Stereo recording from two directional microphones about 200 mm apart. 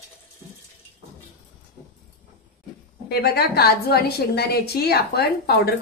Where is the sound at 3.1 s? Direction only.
50° left (ahead or behind).